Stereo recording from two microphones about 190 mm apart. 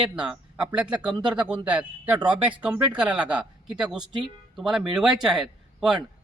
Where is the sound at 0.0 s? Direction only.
5° right (ahead or behind).